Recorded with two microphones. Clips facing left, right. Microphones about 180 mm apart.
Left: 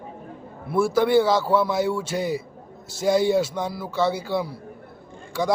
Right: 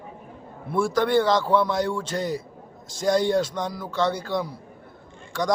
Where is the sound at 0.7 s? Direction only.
5° left (ahead or behind).